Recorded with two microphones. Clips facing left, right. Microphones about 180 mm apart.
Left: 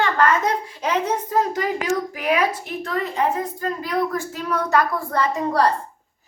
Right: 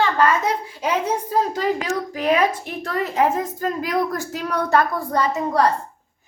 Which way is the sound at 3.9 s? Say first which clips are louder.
Right 1 dB; 40° right (ahead or behind).